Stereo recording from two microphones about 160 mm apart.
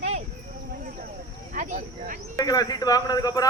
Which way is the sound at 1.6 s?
50° right (ahead or behind).